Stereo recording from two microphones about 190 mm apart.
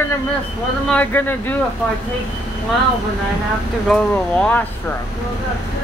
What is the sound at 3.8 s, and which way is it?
Speech, 5° left (ahead or behind).